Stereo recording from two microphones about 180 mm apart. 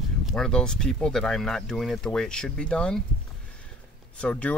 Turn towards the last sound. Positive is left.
turn(degrees=10)  # may be behind; listen again after turning